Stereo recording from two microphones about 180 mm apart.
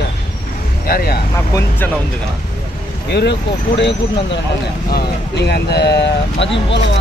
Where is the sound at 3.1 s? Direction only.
70° left (ahead or behind).